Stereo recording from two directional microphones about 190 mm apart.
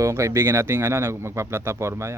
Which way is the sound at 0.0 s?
15° right (ahead or behind).